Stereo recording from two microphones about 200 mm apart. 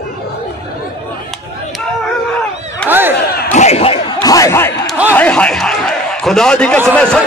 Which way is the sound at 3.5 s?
35° left (ahead or behind).